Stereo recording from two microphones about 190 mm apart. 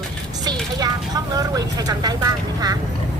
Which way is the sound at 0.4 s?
20° right (ahead or behind).